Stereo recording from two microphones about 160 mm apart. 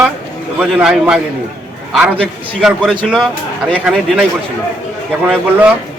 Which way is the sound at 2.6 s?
5° right (ahead or behind).